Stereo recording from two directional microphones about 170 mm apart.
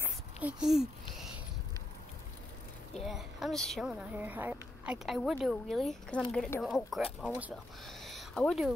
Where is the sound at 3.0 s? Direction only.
Centre (ahead or behind).